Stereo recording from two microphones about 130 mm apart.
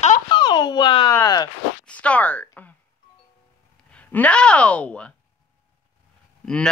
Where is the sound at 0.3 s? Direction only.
35° left (ahead or behind).